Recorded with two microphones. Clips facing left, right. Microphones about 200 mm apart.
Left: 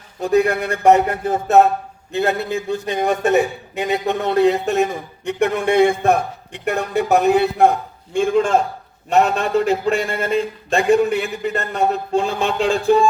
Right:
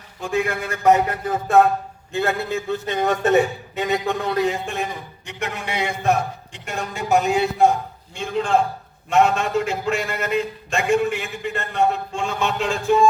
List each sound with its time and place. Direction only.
0.2 s a man's voice: 35° left (ahead or behind); by 7.7 s 60° left (ahead or behind)
8.1 s a man's voice: 50° left (ahead or behind)
9.0 s a man's voice: 35° left (ahead or behind)